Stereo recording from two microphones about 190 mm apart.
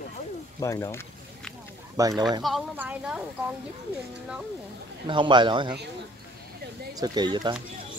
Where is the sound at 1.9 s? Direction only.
15° right (ahead or behind).